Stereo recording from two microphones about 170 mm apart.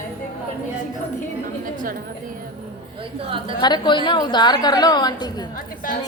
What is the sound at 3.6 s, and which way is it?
A woman's voice, 25° left (ahead or behind).